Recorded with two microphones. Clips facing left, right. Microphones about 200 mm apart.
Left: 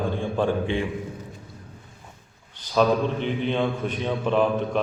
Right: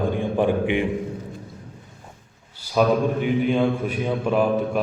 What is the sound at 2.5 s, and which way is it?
A man's voice, 10° right (ahead or behind).